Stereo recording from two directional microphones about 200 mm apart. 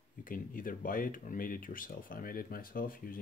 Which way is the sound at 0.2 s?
45° left (ahead or behind).